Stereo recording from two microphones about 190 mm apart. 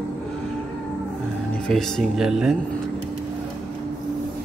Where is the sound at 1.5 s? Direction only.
5° left (ahead or behind).